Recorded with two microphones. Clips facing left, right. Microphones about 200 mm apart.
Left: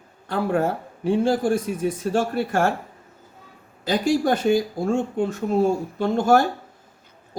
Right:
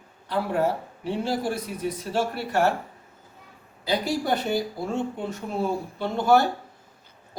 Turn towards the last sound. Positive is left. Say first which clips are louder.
# left 3 dB
turn(degrees=45)  # may be behind; listen again after turning